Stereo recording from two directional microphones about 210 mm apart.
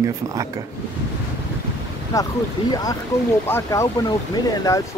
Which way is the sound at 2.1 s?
15° left (ahead or behind).